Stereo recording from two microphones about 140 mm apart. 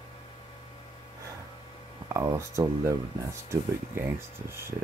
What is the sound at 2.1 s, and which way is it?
Speech, 20° right (ahead or behind).